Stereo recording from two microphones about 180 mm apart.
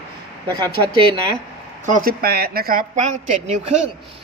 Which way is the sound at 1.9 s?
50° right (ahead or behind).